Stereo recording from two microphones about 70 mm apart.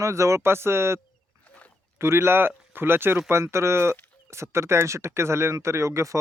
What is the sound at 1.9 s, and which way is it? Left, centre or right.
Speech, right.